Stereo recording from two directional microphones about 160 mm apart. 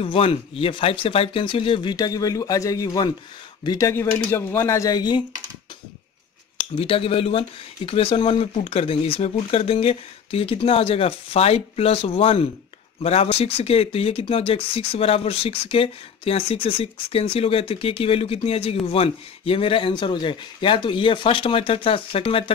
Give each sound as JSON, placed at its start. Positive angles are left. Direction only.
{"t": 0.0, "sound": "speech", "side_deg": 35}
{"t": 6.8, "sound": "speech", "side_deg": 35}